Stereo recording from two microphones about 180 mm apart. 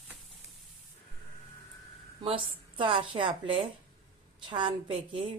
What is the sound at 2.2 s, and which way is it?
A woman's voice, 30° right (ahead or behind).